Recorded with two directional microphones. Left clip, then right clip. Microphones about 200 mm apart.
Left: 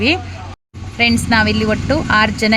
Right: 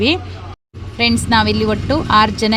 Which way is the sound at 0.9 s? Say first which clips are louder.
Left 1 dB; 25° right (ahead or behind).